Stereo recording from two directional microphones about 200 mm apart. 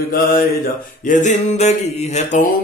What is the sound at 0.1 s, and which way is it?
Music, 45° left (ahead or behind).